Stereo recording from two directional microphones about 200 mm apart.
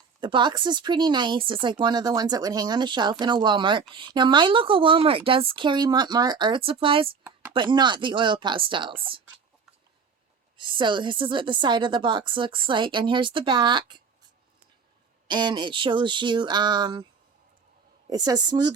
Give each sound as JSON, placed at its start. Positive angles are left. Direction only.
{"t": 0.2, "sound": "speech", "side_deg": -25}
{"t": 10.6, "sound": "speech", "side_deg": -25}
{"t": 15.3, "sound": "speech", "side_deg": -20}
{"t": 18.1, "sound": "speech", "side_deg": -20}